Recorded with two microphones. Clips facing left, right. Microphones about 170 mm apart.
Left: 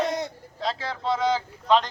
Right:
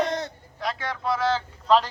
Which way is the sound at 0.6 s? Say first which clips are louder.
Even; 30° left (ahead or behind).